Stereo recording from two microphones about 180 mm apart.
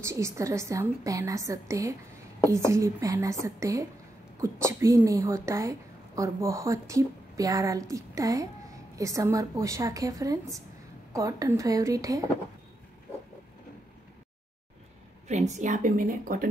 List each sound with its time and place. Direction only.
0.0 s a woman's voice: 15° right (ahead or behind)
15.2 s a woman's voice: 40° right (ahead or behind)